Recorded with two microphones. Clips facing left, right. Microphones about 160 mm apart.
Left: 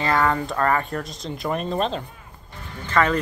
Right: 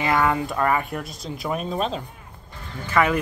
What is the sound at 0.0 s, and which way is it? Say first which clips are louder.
Speech: even; 10° right (ahead or behind).